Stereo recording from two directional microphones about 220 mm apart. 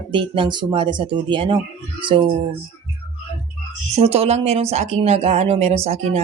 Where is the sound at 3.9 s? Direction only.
30° right (ahead or behind).